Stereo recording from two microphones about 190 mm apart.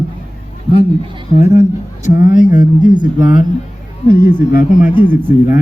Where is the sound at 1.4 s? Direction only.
40° left (ahead or behind).